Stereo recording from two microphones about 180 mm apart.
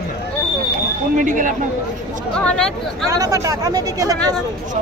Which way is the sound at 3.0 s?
20° right (ahead or behind).